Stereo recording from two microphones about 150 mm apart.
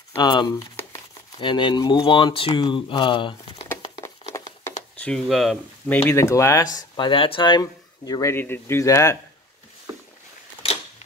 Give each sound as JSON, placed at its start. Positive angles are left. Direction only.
{"t": 0.2, "sound": "speech", "side_deg": 30}
{"t": 5.0, "sound": "speech", "side_deg": 0}
{"t": 5.9, "sound": "speech", "side_deg": 10}
{"t": 6.8, "sound": "speech", "side_deg": 30}
{"t": 10.6, "sound": "camera", "side_deg": 40}